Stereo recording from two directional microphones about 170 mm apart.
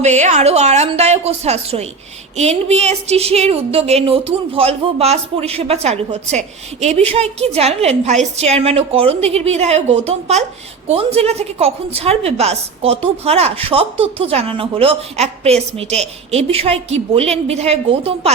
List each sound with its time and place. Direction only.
0.0 s a woman's voice: 40° right (ahead or behind)